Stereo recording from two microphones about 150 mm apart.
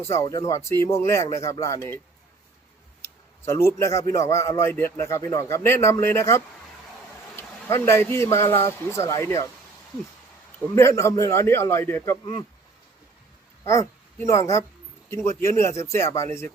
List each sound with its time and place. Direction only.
0.1 s a man's voice: 20° left (ahead or behind)
3.0 s a man's voice: 15° left (ahead or behind)
7.7 s a man's voice: 15° left (ahead or behind)
10.8 s a man's voice: 20° left (ahead or behind)
13.7 s a woman's voice: 20° left (ahead or behind)